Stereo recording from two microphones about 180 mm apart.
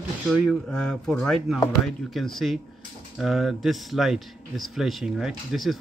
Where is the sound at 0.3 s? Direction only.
Centre (ahead or behind).